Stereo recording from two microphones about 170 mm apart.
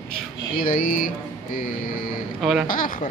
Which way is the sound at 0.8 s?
55° left (ahead or behind).